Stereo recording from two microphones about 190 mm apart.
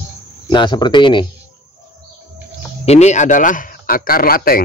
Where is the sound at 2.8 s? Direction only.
35° left (ahead or behind).